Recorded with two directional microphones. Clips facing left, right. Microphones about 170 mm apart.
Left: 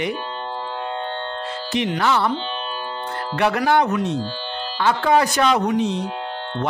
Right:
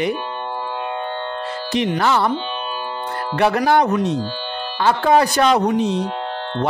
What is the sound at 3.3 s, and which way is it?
Speech, 35° right (ahead or behind).